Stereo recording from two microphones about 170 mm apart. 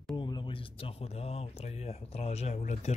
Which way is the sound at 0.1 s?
25° left (ahead or behind).